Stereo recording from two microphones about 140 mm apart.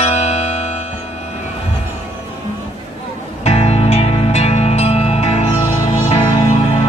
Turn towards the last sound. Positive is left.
turn(degrees=45)  # may be behind; listen again after turning